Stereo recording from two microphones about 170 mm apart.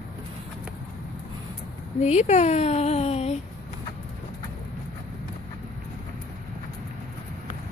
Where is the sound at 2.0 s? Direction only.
40° left (ahead or behind).